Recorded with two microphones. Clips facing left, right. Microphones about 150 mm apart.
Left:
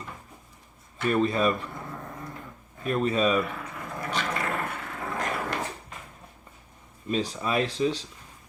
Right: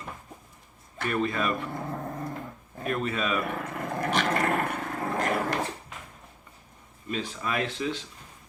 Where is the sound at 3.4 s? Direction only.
55° right (ahead or behind).